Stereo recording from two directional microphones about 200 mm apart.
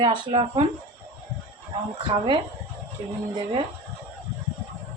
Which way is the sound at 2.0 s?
25° right (ahead or behind).